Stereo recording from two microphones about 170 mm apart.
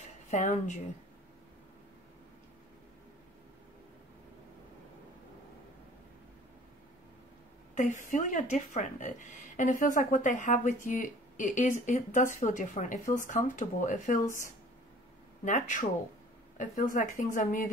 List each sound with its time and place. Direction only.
0.3 s speech: 45° left (ahead or behind)
7.7 s speech: 50° left (ahead or behind)